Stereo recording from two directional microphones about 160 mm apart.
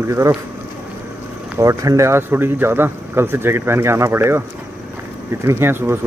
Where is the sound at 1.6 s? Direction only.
20° right (ahead or behind).